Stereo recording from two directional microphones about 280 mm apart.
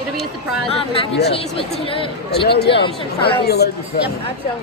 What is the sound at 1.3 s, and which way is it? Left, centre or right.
Speech, centre.